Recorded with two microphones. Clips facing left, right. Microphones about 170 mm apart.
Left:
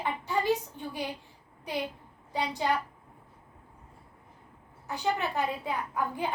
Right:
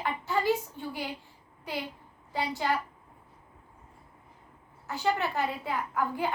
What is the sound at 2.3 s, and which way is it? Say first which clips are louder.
Speech: even; 15° left (ahead or behind).